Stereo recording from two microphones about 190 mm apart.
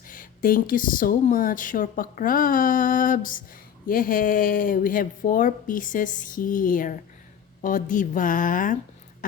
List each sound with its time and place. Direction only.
0.1 s speech: 45° left (ahead or behind)